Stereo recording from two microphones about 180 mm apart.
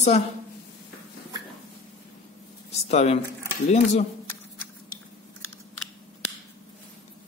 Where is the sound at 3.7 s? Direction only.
40° left (ahead or behind).